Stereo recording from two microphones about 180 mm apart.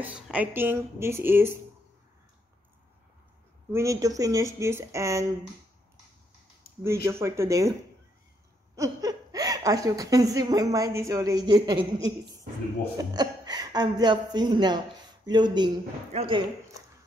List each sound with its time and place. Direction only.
0.0 s speech: 10° right (ahead or behind)
3.7 s speech: 15° right (ahead or behind)
6.8 s speech: 15° right (ahead or behind)
8.7 s a woman's voice: 20° right (ahead or behind)
12.9 s a woman's voice: 20° right (ahead or behind)